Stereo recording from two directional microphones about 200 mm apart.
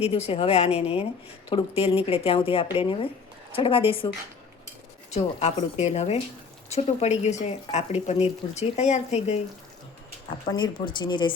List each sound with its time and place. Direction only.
0.0 s speech: 30° left (ahead or behind)
5.1 s speech: 30° left (ahead or behind)
10.5 s speech: 25° left (ahead or behind)